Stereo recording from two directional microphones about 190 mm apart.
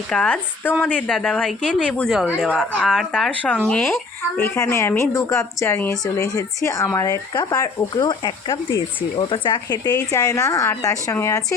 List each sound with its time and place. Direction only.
0.1 s a woman's voice: 5° left (ahead or behind)